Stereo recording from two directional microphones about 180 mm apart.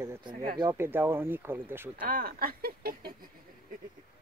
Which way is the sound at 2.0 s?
50° right (ahead or behind).